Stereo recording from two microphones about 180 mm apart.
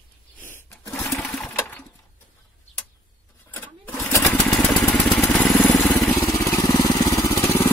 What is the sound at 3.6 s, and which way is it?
Sewing machine, 10° left (ahead or behind).